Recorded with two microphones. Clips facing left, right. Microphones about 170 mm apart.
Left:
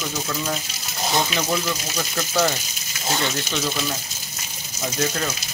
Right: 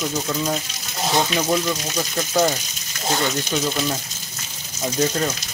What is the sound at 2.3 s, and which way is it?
Speech, 15° right (ahead or behind).